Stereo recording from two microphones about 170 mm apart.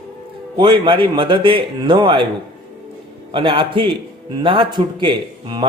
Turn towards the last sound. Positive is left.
turn(degrees=-30)  # may be behind; listen again after turning